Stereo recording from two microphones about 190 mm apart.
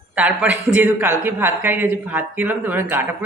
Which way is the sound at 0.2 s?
5° right (ahead or behind).